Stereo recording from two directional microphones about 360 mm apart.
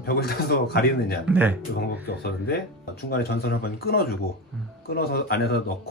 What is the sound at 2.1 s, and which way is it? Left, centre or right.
Speech, left.